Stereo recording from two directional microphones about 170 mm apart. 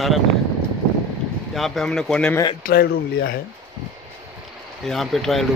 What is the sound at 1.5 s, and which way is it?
Speech, centre (ahead or behind).